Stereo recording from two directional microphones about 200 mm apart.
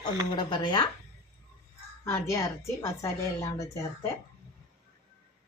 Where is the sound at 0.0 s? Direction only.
20° left (ahead or behind).